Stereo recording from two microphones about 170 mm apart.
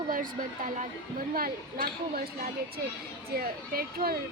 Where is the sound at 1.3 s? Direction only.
60° right (ahead or behind).